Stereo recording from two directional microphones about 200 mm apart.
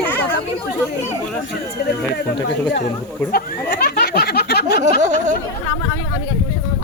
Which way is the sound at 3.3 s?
50° left (ahead or behind).